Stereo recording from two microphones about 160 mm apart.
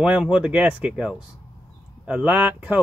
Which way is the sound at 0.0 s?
5° right (ahead or behind).